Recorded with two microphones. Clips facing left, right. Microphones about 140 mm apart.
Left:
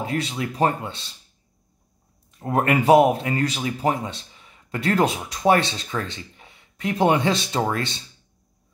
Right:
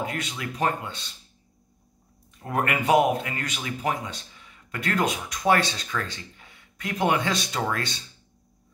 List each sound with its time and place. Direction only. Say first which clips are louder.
0.0 s speech: left 5 dB; 30° left (ahead or behind)
2.4 s speech: left 6 dB; 30° left (ahead or behind)